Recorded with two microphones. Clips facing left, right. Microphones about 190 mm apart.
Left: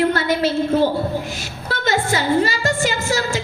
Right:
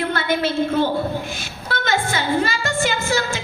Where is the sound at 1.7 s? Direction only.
40° left (ahead or behind).